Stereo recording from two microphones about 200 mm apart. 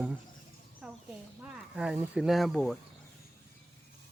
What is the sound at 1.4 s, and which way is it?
Speech, 5° right (ahead or behind).